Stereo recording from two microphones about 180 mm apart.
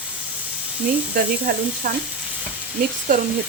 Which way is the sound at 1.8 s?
50° right (ahead or behind).